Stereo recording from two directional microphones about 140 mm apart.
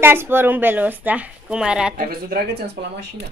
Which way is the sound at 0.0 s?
15° right (ahead or behind).